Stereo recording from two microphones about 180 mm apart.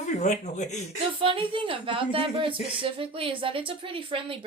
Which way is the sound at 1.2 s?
30° right (ahead or behind).